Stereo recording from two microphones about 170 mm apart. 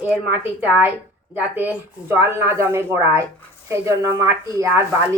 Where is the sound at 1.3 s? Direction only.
10° right (ahead or behind).